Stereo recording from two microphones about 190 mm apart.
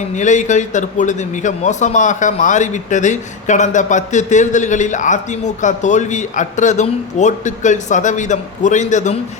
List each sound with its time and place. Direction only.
0.1 s a man's voice: 40° left (ahead or behind)